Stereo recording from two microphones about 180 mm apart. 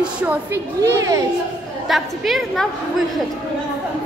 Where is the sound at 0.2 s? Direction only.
10° right (ahead or behind).